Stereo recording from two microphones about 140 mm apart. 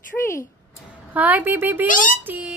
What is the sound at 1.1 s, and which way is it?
Speech, 10° right (ahead or behind).